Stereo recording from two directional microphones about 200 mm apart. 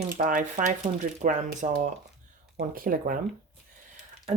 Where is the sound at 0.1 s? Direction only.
45° right (ahead or behind).